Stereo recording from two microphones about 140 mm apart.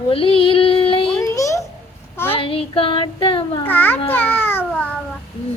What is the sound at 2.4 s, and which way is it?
Child singing, 40° left (ahead or behind).